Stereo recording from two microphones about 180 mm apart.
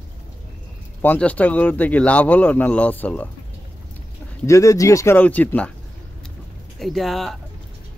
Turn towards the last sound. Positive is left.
turn(degrees=0)  # may be behind; listen again after turning